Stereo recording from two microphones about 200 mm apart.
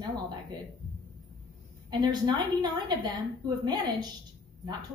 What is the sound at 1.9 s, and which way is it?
A woman's voice, 20° right (ahead or behind).